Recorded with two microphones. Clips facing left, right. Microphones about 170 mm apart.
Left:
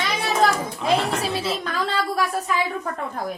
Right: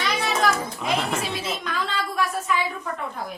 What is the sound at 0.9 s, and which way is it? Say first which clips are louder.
Music: left 2 dB; centre (ahead or behind).